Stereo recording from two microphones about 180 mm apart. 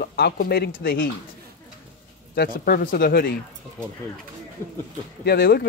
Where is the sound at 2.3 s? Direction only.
55° left (ahead or behind).